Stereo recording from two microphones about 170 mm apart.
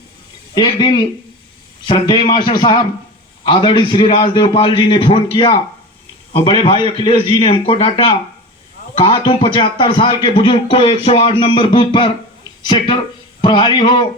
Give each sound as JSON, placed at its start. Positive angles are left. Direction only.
{"t": 0.5, "sound": "a man's voice", "side_deg": 25}